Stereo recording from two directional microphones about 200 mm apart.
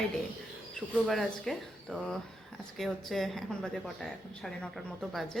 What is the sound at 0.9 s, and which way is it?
Speech, centre (ahead or behind).